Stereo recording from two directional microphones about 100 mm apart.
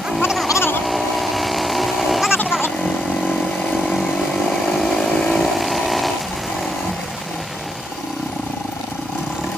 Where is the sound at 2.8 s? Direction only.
10° left (ahead or behind).